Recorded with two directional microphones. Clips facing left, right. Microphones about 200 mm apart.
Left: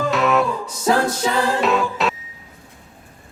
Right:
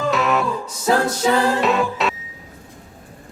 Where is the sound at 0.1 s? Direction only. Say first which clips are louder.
Left 2 dB; centre (ahead or behind).